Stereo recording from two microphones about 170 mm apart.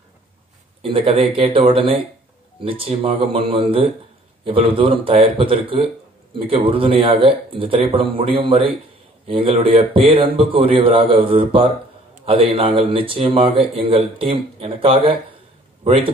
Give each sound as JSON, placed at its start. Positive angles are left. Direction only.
{"t": 0.8, "sound": "a man's voice", "side_deg": -30}